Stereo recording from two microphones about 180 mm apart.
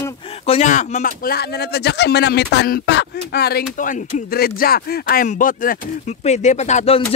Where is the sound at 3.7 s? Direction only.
50° left (ahead or behind).